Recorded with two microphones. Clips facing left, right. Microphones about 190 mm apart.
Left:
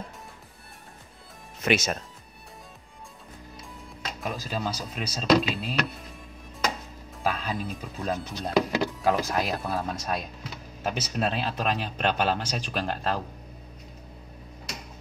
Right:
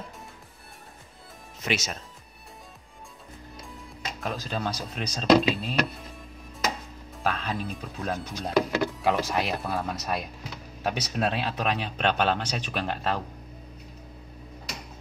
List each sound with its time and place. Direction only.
1.6 s speech: 55° left (ahead or behind)
3.6 s speech: centre (ahead or behind)
7.2 s a man's voice: centre (ahead or behind)